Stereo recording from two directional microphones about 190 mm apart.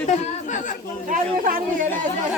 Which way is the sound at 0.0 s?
35° left (ahead or behind).